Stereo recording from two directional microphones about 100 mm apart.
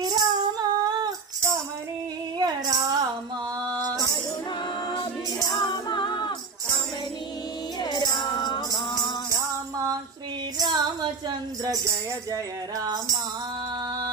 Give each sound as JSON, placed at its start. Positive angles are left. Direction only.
{"t": 0.0, "sound": "child singing", "side_deg": -45}
{"t": 2.3, "sound": "music", "side_deg": -45}
{"t": 5.5, "sound": "music", "side_deg": 50}
{"t": 7.8, "sound": "music", "side_deg": 45}
{"t": 10.6, "sound": "music", "side_deg": -45}